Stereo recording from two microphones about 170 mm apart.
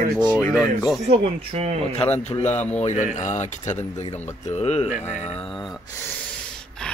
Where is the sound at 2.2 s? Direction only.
40° left (ahead or behind).